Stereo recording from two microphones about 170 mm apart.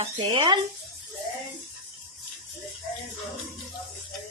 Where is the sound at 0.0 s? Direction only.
30° right (ahead or behind).